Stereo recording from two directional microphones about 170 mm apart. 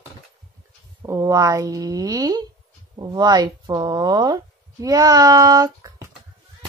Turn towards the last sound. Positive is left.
turn(degrees=-20)  # may be behind; listen again after turning